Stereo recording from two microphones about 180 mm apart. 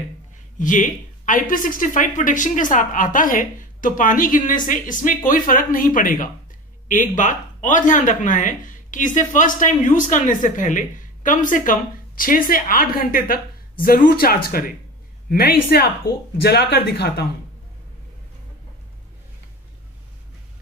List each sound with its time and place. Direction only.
0.6 s speech: 45° left (ahead or behind); by 17.3 s 60° left (ahead or behind)